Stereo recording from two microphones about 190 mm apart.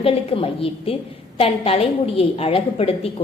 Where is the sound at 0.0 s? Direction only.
30° left (ahead or behind).